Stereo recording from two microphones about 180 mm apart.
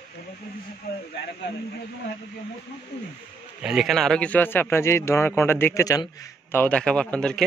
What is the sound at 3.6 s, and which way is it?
Speech, 5° right (ahead or behind).